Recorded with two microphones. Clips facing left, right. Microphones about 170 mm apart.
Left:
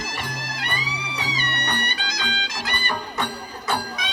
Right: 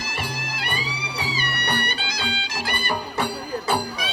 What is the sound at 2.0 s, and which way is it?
Music, 30° right (ahead or behind).